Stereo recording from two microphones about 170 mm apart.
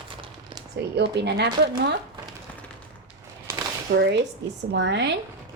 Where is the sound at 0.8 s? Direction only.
80° right.